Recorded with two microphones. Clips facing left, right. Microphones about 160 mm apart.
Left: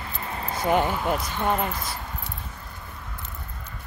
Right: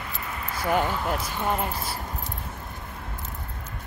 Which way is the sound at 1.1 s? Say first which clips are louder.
Left 2 dB; 5° right (ahead or behind).